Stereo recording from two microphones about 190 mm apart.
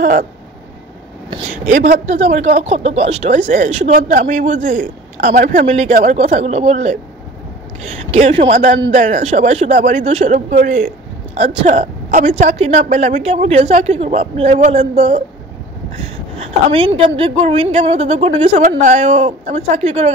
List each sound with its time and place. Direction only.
0.0 s a sound: 45° right (ahead or behind)
1.7 s speech: 40° right (ahead or behind)
8.1 s speech: 35° right (ahead or behind)
16.3 s speech: 30° right (ahead or behind)